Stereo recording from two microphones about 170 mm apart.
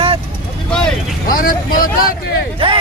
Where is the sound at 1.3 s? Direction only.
55° left (ahead or behind).